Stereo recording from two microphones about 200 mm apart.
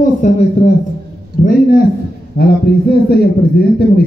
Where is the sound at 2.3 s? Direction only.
55° left (ahead or behind).